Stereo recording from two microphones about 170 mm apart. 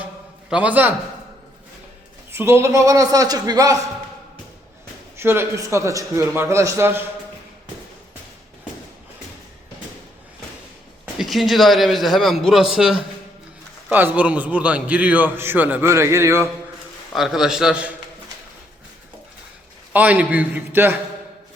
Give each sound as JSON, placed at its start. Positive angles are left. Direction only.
{"t": 0.5, "sound": "a man's voice", "side_deg": -10}
{"t": 2.3, "sound": "a man's voice", "side_deg": -15}
{"t": 5.1, "sound": "a man's voice", "side_deg": -15}
{"t": 11.0, "sound": "a man's voice", "side_deg": 0}
{"t": 17.1, "sound": "a man's voice", "side_deg": 0}
{"t": 19.9, "sound": "a man's voice", "side_deg": -10}